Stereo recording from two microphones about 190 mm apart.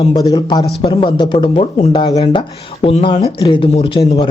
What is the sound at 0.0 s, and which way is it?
Speech, 20° left (ahead or behind).